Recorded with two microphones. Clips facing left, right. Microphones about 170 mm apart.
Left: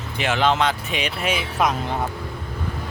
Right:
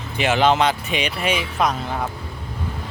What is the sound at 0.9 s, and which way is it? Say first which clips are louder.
Speech: right 2 dB; centre (ahead or behind).